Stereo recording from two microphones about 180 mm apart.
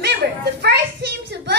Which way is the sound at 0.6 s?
65° right (ahead or behind).